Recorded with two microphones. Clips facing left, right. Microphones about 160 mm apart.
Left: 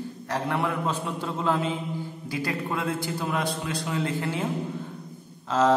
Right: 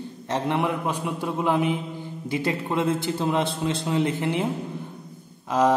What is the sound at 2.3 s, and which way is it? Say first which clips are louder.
A man's voice: right 4 dB; 20° right (ahead or behind).